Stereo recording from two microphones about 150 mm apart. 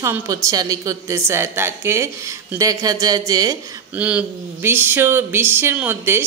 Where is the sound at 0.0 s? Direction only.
20° right (ahead or behind).